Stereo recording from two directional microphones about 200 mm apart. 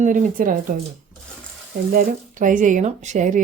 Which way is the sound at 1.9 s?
40° right (ahead or behind).